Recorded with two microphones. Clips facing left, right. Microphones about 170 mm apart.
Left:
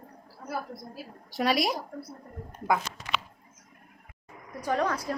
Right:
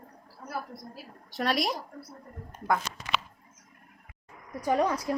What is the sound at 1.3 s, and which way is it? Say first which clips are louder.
Speech: left 2 dB; 5° left (ahead or behind).